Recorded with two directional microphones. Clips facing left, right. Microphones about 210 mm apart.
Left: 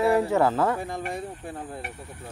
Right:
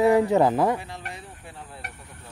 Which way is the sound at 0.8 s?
50° left (ahead or behind).